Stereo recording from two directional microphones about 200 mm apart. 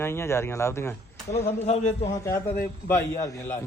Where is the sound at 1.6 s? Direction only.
35° left (ahead or behind).